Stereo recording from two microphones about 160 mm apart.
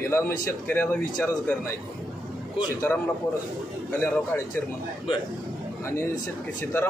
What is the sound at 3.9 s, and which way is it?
Speech, 15° left (ahead or behind).